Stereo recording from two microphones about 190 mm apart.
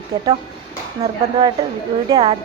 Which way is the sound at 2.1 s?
30° right (ahead or behind).